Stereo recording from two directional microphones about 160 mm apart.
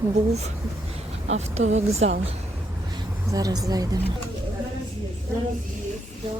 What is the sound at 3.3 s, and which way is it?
Speech, 20° right (ahead or behind).